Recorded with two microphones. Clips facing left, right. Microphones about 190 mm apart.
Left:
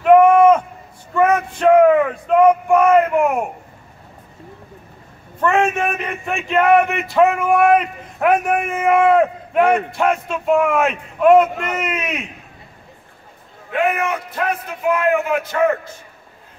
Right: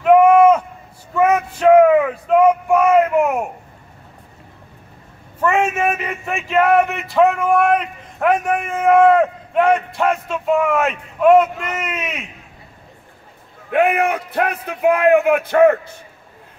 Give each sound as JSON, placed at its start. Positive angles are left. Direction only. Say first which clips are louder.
{"t": 0.0, "sound": "a sound", "louder": "even", "side_deg": -5}
{"t": 5.4, "sound": "speech", "louder": "even", "side_deg": -5}
{"t": 13.7, "sound": "a man's voice", "louder": "right 3 dB", "side_deg": -60}